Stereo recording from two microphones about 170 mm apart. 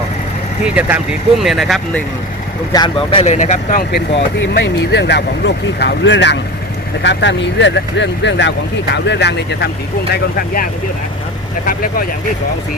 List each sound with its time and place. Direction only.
0.6 s speech: 10° right (ahead or behind)
2.7 s speech: 30° left (ahead or behind)
3.3 s speech: 45° left (ahead or behind)
4.4 s speech: 85° left
10.3 s speech: 60° left (ahead or behind)